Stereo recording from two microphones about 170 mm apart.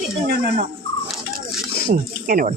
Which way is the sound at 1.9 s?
55° right (ahead or behind).